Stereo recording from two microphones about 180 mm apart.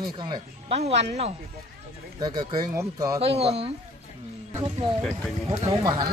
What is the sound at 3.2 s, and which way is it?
Speech, 35° right (ahead or behind).